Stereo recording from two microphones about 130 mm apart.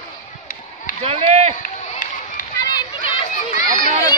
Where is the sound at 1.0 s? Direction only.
55° right (ahead or behind).